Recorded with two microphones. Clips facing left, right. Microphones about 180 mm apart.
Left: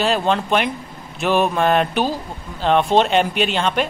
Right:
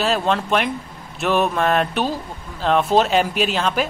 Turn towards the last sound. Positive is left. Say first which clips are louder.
# left 1 dB
turn(degrees=0)  # may be behind; listen again after turning